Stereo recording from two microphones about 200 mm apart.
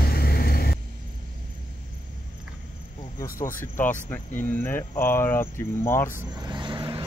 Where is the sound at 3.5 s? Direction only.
10° left (ahead or behind).